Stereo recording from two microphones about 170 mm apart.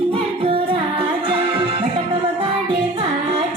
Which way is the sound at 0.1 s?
35° right (ahead or behind).